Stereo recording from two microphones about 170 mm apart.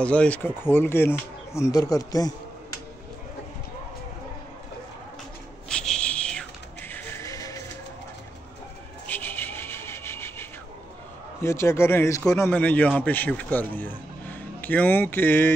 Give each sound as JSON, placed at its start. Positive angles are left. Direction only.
{"t": 0.0, "sound": "a man's voice", "side_deg": 5}
{"t": 5.7, "sound": "music", "side_deg": 5}
{"t": 9.0, "sound": "rub", "side_deg": 10}
{"t": 11.4, "sound": "a man's voice", "side_deg": 15}